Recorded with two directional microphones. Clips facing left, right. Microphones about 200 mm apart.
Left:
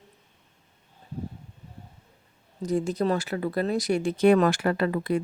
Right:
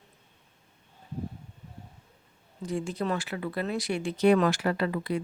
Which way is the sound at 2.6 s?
40° left (ahead or behind).